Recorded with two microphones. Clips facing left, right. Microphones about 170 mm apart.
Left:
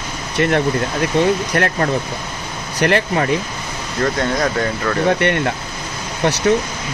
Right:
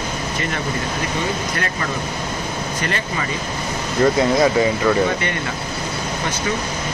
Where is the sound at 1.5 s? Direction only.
60° left (ahead or behind).